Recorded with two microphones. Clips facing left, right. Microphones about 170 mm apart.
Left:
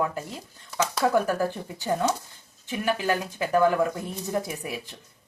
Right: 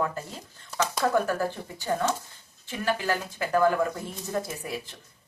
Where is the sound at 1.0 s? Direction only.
10° left (ahead or behind).